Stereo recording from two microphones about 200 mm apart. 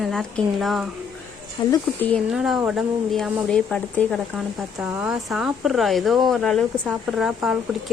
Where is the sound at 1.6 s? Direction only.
20° left (ahead or behind).